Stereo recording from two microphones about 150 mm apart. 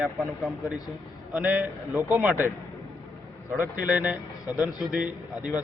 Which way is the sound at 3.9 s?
10° right (ahead or behind).